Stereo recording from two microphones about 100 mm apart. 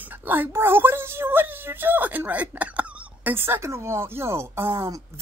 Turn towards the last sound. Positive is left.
turn(degrees=-30)  # may be behind; listen again after turning